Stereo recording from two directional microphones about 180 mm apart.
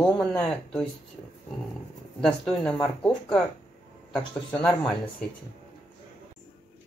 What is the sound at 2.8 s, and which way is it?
Speech, centre (ahead or behind).